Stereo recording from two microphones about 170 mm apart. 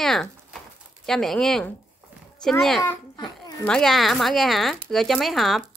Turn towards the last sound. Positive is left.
turn(degrees=0)  # may be behind; listen again after turning